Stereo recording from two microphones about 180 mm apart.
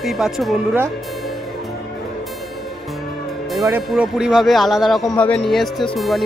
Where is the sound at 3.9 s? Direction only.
5° right (ahead or behind).